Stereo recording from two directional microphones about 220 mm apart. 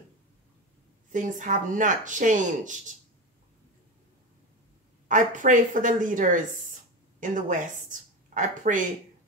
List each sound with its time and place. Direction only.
1.1 s speech: 35° right (ahead or behind)
5.0 s a woman's voice: 35° right (ahead or behind)